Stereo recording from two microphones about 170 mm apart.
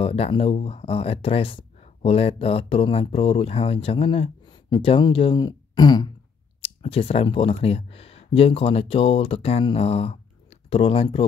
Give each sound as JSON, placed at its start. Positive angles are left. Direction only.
{"t": 0.0, "sound": "speech", "side_deg": 35}